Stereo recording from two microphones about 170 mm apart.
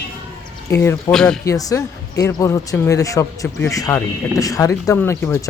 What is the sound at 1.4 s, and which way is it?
Speech, 20° left (ahead or behind).